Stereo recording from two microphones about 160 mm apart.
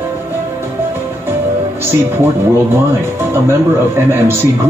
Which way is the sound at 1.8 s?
15° right (ahead or behind).